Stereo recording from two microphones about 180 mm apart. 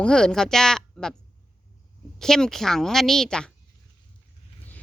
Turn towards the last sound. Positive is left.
turn(degrees=5)  # may be behind; listen again after turning